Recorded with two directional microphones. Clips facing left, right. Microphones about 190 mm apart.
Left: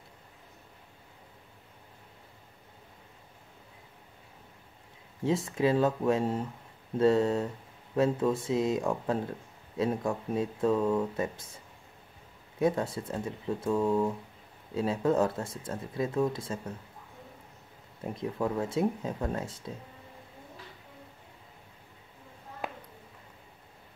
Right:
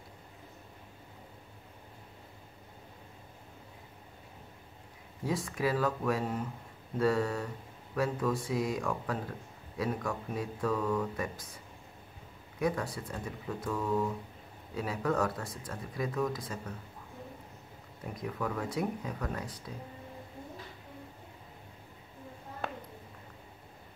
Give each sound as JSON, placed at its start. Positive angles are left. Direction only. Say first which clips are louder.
{"t": 5.2, "sound": "speech", "louder": "left 5 dB", "side_deg": 25}
{"t": 18.1, "sound": "speech", "louder": "left 4 dB", "side_deg": 25}